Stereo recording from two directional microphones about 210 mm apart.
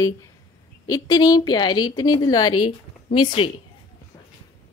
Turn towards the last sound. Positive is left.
turn(degrees=25)  # may be behind; listen again after turning